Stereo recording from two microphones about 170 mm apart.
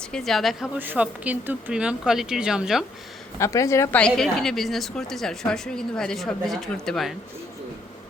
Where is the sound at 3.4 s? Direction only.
15° left (ahead or behind); by 7.2 s centre (ahead or behind).